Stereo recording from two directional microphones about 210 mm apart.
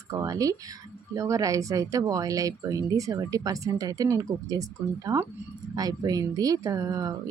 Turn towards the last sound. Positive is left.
turn(degrees=-15)  # may be behind; listen again after turning